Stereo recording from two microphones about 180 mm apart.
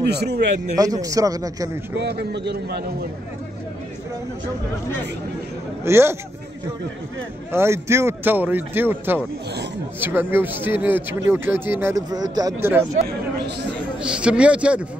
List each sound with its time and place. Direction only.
0.0 s a man's voice: 65° right (ahead or behind)
0.7 s a man's voice: 20° right (ahead or behind)
2.0 s a man's voice: 65° right (ahead or behind)
5.9 s speech: 15° right (ahead or behind)
7.5 s speech: 15° right (ahead or behind)
14.2 s speech: 5° right (ahead or behind)